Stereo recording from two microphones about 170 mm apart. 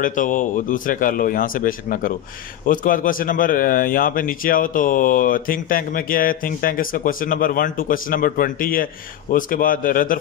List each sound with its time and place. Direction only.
0.0 s a man's voice: 50° left (ahead or behind)